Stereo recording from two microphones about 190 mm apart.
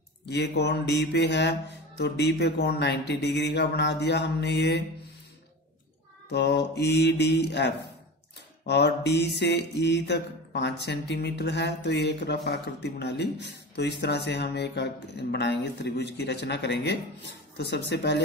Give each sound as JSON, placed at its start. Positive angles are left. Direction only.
{"t": 0.3, "sound": "speech", "side_deg": 65}
{"t": 6.3, "sound": "speech", "side_deg": 65}